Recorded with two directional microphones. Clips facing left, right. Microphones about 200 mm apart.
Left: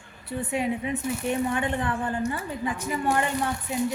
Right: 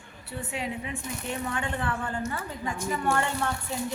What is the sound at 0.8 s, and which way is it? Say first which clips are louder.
A woman's voice: left 7 dB; 20° left (ahead or behind).